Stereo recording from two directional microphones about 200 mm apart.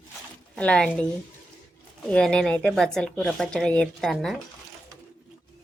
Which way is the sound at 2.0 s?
5° left (ahead or behind).